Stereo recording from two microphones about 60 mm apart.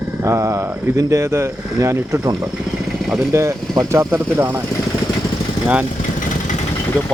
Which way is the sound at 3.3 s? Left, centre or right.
Right.